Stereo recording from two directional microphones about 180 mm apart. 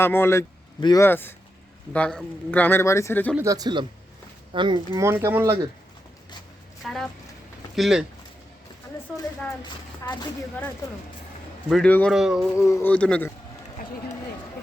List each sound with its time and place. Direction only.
0.0 s speech: 15° left (ahead or behind)
3.3 s speech: 20° right (ahead or behind)
5.0 s speech: 15° right (ahead or behind)
6.8 s a man's voice: centre (ahead or behind)
9.6 s speech: 25° left (ahead or behind)
11.7 s a man's voice: 5° left (ahead or behind)
12.5 s speech: 15° left (ahead or behind)